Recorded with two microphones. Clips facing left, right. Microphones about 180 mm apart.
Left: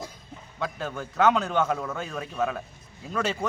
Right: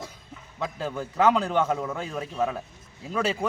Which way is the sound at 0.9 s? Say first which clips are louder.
Right 1 dB; centre (ahead or behind).